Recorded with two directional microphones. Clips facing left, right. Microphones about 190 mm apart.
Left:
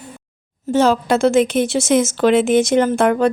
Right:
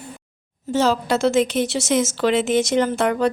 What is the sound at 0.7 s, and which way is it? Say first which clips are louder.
A woman's voice: left 4 dB; 55° left (ahead or behind).